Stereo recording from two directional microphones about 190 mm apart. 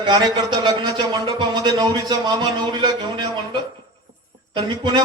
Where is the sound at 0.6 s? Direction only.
25° right (ahead or behind).